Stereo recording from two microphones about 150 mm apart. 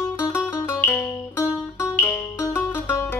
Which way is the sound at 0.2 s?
15° left (ahead or behind).